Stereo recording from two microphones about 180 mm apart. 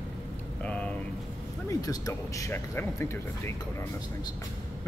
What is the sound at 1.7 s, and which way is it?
Speech, 20° left (ahead or behind).